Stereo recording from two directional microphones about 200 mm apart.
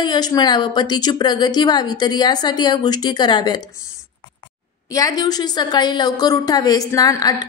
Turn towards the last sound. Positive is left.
turn(degrees=20)  # may be behind; listen again after turning